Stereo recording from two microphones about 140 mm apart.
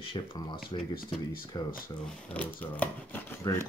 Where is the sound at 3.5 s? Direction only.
25° left (ahead or behind).